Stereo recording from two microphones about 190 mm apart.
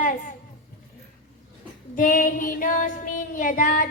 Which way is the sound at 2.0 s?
45° left (ahead or behind).